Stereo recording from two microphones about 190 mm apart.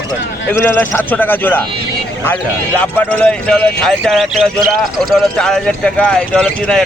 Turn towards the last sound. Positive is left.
turn(degrees=5)  # may be behind; listen again after turning